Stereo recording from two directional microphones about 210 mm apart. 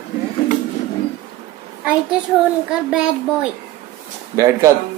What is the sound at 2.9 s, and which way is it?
A child's voice, 5° right (ahead or behind).